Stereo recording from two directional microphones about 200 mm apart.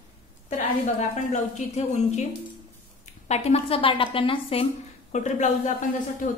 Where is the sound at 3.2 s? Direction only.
35° left (ahead or behind).